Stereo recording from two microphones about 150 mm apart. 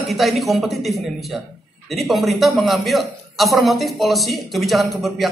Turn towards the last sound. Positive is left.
turn(degrees=0)  # may be behind; listen again after turning